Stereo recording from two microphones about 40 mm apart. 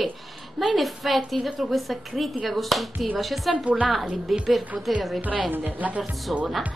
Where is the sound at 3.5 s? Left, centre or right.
Right.